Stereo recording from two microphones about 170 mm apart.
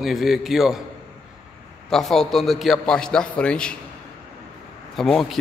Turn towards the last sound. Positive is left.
turn(degrees=0)  # may be behind; listen again after turning